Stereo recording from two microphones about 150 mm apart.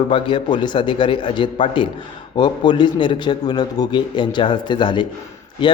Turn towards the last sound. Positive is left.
turn(degrees=30)  # may be behind; listen again after turning